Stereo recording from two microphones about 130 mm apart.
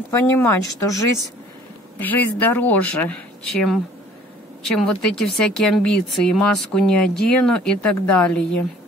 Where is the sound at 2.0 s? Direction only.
15° left (ahead or behind).